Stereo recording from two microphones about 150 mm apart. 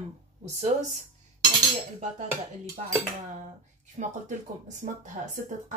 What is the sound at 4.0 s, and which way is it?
A woman's voice, 50° right (ahead or behind).